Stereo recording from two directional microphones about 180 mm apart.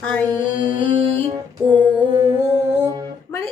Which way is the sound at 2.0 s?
25° right (ahead or behind).